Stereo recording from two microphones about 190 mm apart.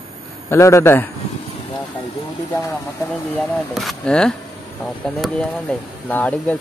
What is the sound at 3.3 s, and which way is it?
Speech, centre (ahead or behind).